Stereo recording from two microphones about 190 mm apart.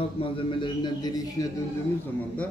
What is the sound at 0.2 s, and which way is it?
A man's voice, 25° left (ahead or behind).